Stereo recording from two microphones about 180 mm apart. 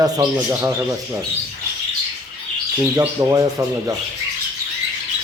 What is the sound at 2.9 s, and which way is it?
Rub, 15° right (ahead or behind).